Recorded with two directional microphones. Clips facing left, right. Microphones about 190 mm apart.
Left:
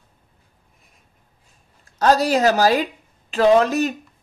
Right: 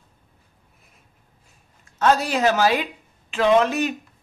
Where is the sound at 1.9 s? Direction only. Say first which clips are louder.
Left 3 dB; 35° left (ahead or behind).